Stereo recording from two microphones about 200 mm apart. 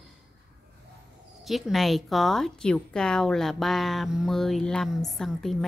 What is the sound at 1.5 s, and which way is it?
Speech, centre (ahead or behind).